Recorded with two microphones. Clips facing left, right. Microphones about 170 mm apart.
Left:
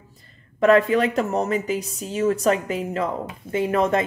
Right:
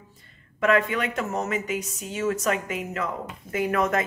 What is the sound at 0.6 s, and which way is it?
Speech, 35° left (ahead or behind).